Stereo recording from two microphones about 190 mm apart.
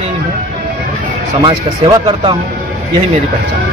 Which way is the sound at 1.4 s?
25° right (ahead or behind).